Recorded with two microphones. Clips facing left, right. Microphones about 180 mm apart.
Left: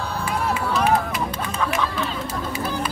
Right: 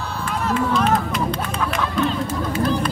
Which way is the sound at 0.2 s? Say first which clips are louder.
Right 4 dB; 10° left (ahead or behind).